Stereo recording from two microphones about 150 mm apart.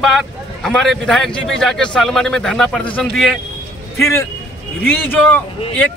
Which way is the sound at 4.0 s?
20° left (ahead or behind).